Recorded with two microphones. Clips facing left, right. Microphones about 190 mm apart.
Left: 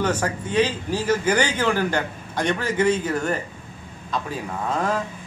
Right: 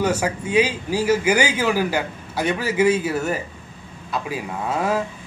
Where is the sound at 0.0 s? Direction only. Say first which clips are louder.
Right 2 dB; 10° right (ahead or behind).